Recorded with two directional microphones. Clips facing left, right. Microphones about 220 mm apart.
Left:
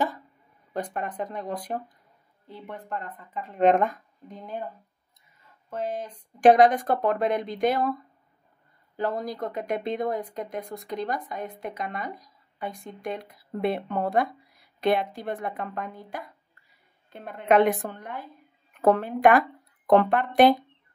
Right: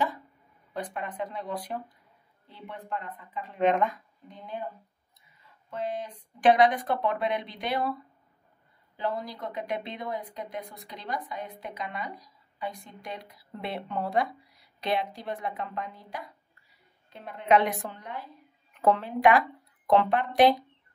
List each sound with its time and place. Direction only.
0.9 s speech: 45° left (ahead or behind)
5.7 s speech: 45° left (ahead or behind)
8.9 s speech: 45° left (ahead or behind)